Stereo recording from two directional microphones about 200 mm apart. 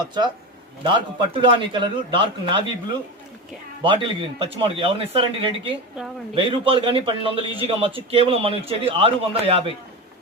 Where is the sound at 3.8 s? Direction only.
25° right (ahead or behind).